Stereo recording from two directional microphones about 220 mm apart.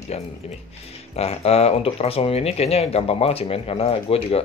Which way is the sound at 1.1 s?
30° left (ahead or behind).